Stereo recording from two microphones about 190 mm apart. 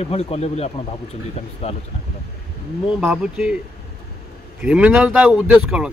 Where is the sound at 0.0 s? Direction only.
35° left (ahead or behind).